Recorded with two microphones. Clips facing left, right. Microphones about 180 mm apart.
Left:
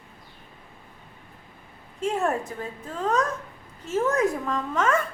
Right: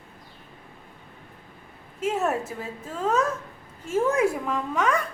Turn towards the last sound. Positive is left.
turn(degrees=0)  # may be behind; listen again after turning